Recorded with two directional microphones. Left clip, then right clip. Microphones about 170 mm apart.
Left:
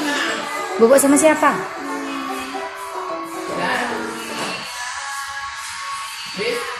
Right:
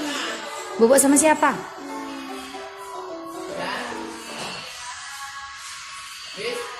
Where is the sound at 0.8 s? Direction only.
30° right (ahead or behind).